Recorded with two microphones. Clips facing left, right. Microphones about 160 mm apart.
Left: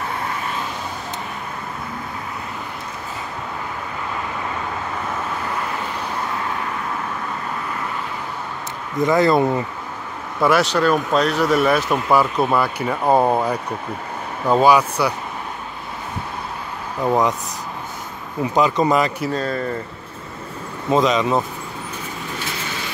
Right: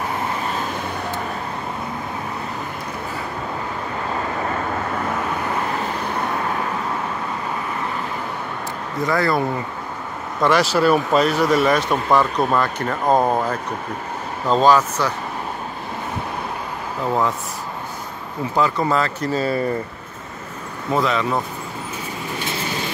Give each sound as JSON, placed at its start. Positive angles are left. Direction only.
{"t": 9.0, "sound": "speech", "side_deg": 20}
{"t": 10.4, "sound": "speech", "side_deg": 0}
{"t": 17.0, "sound": "speech", "side_deg": 15}
{"t": 18.4, "sound": "speech", "side_deg": 20}
{"t": 19.3, "sound": "speech", "side_deg": -5}
{"t": 20.9, "sound": "speech", "side_deg": 20}